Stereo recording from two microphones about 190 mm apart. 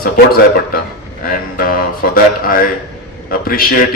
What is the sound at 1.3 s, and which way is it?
A man's voice, 50° left (ahead or behind).